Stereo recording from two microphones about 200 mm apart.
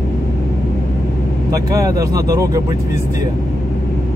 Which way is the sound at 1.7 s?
15° right (ahead or behind).